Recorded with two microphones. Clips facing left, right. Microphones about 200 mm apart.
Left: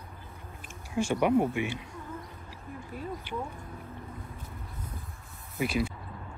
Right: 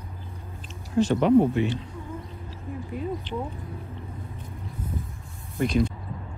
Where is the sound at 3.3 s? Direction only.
10° left (ahead or behind).